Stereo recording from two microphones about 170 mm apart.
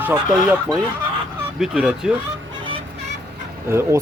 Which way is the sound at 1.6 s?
5° right (ahead or behind).